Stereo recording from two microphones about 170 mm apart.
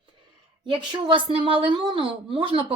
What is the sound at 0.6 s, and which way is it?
A woman's voice, 25° right (ahead or behind).